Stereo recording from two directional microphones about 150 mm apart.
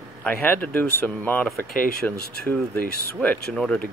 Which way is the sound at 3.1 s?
5° left (ahead or behind).